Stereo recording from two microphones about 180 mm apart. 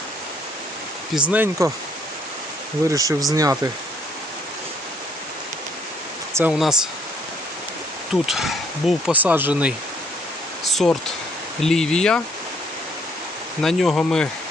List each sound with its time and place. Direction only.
1.1 s speech: 5° right (ahead or behind)
2.9 s speech: 20° right (ahead or behind)
6.3 s speech: 5° right (ahead or behind)
8.1 s speech: centre (ahead or behind)
10.6 s a sound: centre (ahead or behind)
11.6 s speech: 5° left (ahead or behind)
13.6 s speech: centre (ahead or behind)